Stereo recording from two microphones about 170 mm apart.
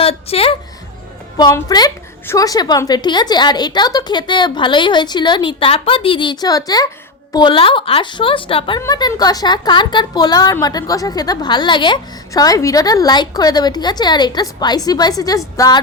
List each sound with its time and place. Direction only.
0.0 s a woman's voice: 35° left (ahead or behind)
1.5 s a woman's voice: 20° left (ahead or behind)